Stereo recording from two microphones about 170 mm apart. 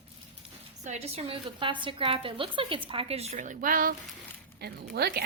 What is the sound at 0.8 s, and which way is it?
A woman's voice, 40° right (ahead or behind).